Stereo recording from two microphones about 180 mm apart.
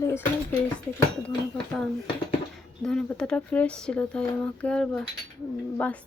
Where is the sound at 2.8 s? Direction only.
5° left (ahead or behind).